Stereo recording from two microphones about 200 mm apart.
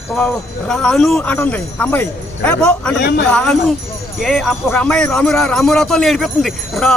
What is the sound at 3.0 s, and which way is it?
Speech, 55° left (ahead or behind).